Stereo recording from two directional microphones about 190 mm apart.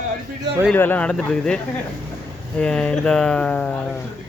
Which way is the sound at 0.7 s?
10° left (ahead or behind).